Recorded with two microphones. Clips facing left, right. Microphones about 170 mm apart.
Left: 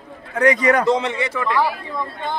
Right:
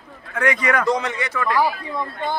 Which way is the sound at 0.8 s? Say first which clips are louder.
Left 3 dB; 25° left (ahead or behind).